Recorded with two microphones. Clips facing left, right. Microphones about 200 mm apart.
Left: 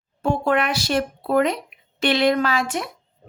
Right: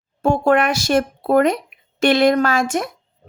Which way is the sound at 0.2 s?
45° right (ahead or behind).